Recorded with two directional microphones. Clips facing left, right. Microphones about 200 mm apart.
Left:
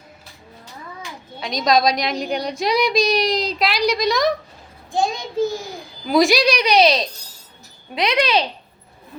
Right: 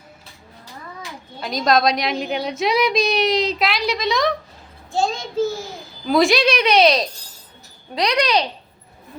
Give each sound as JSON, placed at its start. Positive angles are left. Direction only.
{"t": 1.4, "sound": "a woman's voice", "side_deg": -5}
{"t": 4.9, "sound": "a child's voice", "side_deg": 15}
{"t": 6.1, "sound": "a woman's voice", "side_deg": 0}
{"t": 7.9, "sound": "a child's voice", "side_deg": 25}